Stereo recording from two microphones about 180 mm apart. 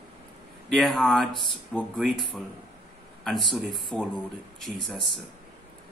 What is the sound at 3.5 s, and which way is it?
Speech, centre (ahead or behind).